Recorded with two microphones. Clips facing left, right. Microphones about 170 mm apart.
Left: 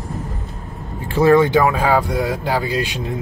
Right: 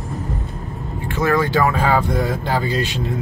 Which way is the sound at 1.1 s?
30° left (ahead or behind).